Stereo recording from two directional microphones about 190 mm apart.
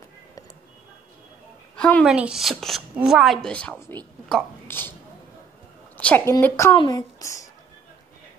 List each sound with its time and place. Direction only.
1.8 s a woman's voice: 5° left (ahead or behind)
2.1 s speech: 5° right (ahead or behind)
5.9 s a woman's voice: 10° left (ahead or behind)